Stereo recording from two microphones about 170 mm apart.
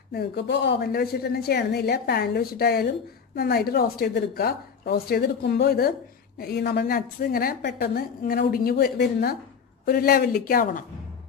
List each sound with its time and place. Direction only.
0.1 s a woman's voice: 75° left (ahead or behind); by 10.8 s 55° left (ahead or behind)